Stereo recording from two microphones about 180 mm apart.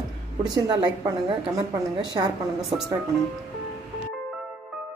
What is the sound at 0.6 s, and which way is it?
A woman's voice, 20° right (ahead or behind).